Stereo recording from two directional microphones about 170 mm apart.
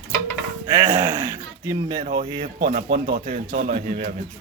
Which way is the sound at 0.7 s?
15° right (ahead or behind).